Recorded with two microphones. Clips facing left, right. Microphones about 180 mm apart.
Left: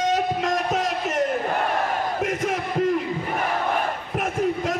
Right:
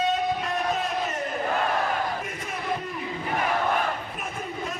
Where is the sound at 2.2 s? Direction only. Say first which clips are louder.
Left 8 dB; 90° left.